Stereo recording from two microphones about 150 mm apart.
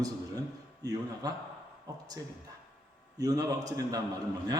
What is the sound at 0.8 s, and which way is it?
A man's voice, 25° right (ahead or behind).